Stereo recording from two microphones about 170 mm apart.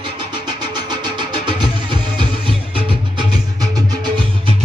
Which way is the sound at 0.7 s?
25° right (ahead or behind).